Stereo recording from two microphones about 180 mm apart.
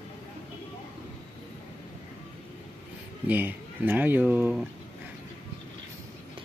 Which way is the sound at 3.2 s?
10° right (ahead or behind).